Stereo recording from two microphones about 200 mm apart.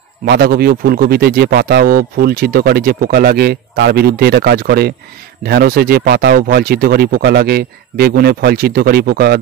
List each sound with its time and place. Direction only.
0.2 s a man's voice: 50° right (ahead or behind)